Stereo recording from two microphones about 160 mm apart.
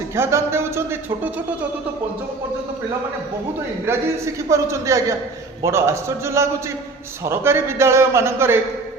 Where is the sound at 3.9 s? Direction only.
15° right (ahead or behind).